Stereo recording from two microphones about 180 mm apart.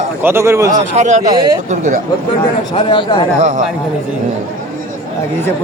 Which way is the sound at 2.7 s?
30° left (ahead or behind).